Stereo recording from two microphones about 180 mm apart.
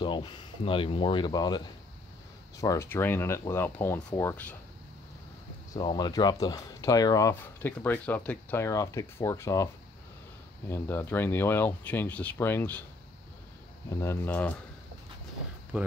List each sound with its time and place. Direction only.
0.0 s speech: 25° left (ahead or behind)
5.7 s speech: 25° left (ahead or behind)
10.7 s speech: 15° left (ahead or behind)
13.8 s speech: 15° left (ahead or behind)
15.7 s speech: 5° right (ahead or behind)